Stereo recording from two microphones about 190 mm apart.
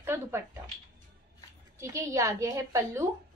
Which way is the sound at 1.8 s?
15° right (ahead or behind).